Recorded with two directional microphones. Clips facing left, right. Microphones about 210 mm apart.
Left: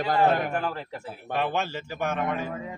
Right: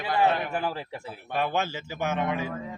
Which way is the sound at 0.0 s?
45° left (ahead or behind).